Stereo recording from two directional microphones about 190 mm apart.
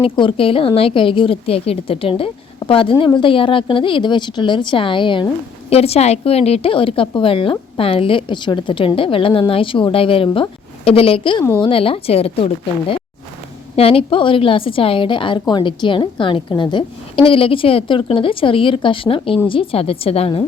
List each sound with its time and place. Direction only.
0.0 s a woman's voice: 30° left (ahead or behind)
13.7 s a woman's voice: 30° left (ahead or behind)